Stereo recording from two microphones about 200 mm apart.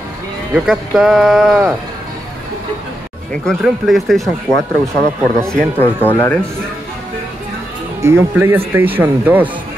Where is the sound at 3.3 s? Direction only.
Centre (ahead or behind).